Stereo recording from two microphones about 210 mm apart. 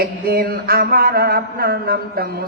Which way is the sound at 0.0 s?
45° right (ahead or behind).